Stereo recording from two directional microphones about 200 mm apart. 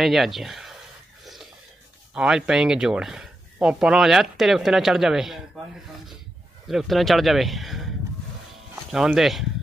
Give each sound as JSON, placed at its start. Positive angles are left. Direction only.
{"t": 0.0, "sound": "speech", "side_deg": 0}
{"t": 1.2, "sound": "a sound", "side_deg": 0}
{"t": 2.1, "sound": "speech", "side_deg": -5}
{"t": 6.7, "sound": "speech", "side_deg": 0}
{"t": 8.9, "sound": "speech", "side_deg": 0}